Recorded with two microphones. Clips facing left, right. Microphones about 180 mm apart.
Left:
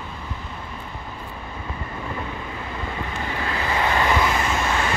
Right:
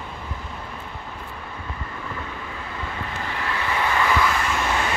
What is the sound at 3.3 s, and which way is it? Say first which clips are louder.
Vehicle: left 1 dB; 25° left (ahead or behind).